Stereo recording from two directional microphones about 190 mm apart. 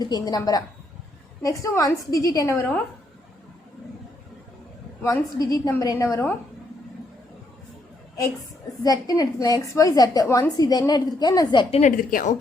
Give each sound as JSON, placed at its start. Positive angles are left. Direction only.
{"t": 0.0, "sound": "a woman's voice", "side_deg": 20}
{"t": 5.0, "sound": "a woman's voice", "side_deg": 20}
{"t": 8.8, "sound": "a woman's voice", "side_deg": 20}
{"t": 11.7, "sound": "a woman's voice", "side_deg": 40}